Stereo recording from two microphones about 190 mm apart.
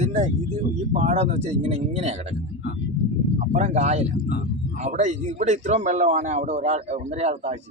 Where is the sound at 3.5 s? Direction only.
35° right (ahead or behind).